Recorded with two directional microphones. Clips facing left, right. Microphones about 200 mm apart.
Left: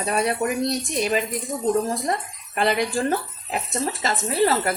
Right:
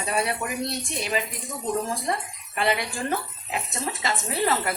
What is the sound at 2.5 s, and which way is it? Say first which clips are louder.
Speech: left 4 dB; 40° left (ahead or behind).